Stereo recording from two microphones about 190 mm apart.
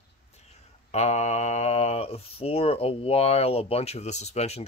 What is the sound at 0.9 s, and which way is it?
Speech, 35° left (ahead or behind).